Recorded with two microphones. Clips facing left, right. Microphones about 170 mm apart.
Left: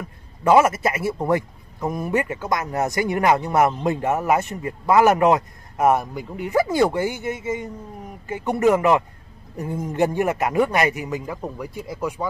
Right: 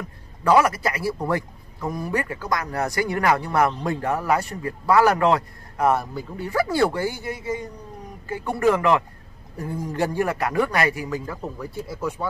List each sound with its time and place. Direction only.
0.4 s speech: 25° left (ahead or behind)